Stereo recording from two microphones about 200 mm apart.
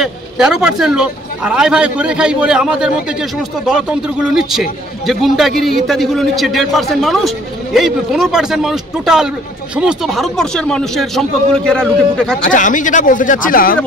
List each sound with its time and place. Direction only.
0.0 s a man's voice: 5° right (ahead or behind)
12.4 s speech: 40° left (ahead or behind)